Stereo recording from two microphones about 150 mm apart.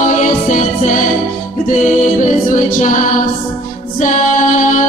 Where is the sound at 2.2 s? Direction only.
60° left (ahead or behind).